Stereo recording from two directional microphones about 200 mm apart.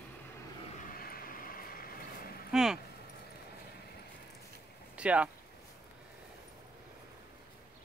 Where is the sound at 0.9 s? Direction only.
50° left (ahead or behind).